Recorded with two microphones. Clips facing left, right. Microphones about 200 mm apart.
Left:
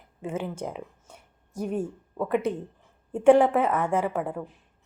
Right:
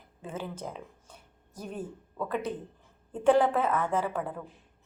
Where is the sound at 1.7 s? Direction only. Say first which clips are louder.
Left 6 dB; 30° left (ahead or behind).